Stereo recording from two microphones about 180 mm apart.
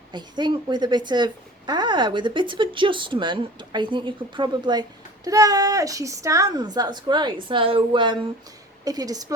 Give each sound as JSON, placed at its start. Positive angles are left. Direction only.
{"t": 0.1, "sound": "a woman's voice", "side_deg": -25}